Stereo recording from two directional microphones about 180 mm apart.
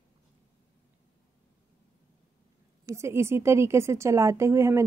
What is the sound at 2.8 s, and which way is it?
Speech, 15° right (ahead or behind).